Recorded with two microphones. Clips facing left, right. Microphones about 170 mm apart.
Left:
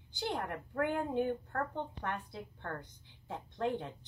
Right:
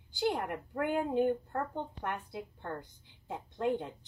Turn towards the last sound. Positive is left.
turn(degrees=-15)  # may be behind; listen again after turning